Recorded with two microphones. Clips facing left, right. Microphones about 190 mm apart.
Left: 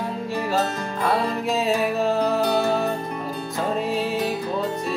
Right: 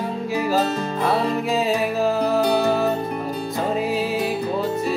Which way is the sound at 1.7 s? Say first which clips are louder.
Right 1 dB; centre (ahead or behind).